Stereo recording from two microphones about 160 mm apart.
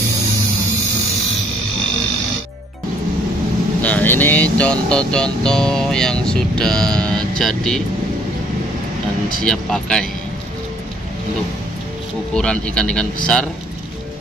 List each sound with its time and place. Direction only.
3.8 s speech: 10° left (ahead or behind)
9.4 s speech: 5° left (ahead or behind)
12.4 s speech: 5° left (ahead or behind)